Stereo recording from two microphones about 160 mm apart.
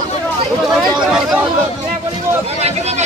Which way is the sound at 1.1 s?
5° right (ahead or behind).